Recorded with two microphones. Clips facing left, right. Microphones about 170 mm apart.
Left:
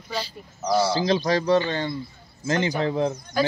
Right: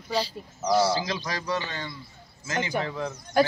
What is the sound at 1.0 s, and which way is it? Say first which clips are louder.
Speech: left 10 dB; 25° left (ahead or behind).